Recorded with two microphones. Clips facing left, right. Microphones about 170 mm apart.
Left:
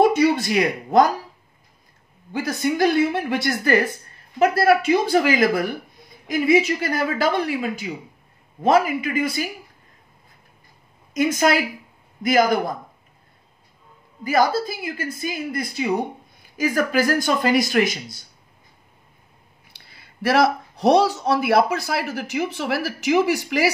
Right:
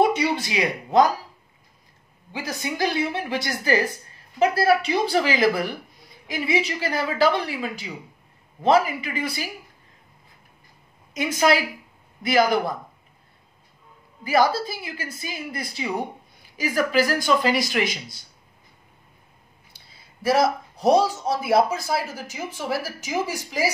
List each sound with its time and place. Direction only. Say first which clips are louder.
0.1 s speech: left 6 dB; 50° left (ahead or behind)
2.3 s a woman's voice: left 7 dB; 55° left (ahead or behind)
11.1 s a woman's voice: left 2 dB; 45° left (ahead or behind)
14.2 s a woman's voice: left 1 dB; 45° left (ahead or behind)
19.7 s speech: left 3 dB; 75° left (ahead or behind)